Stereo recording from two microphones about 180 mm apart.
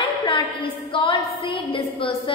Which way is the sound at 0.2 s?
30° left (ahead or behind).